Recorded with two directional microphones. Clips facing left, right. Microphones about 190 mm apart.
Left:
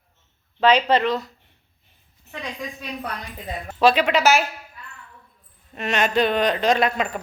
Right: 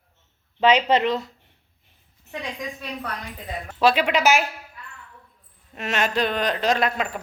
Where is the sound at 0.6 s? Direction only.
20° right (ahead or behind).